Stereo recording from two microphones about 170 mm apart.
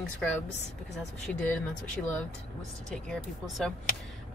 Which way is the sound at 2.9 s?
5° left (ahead or behind).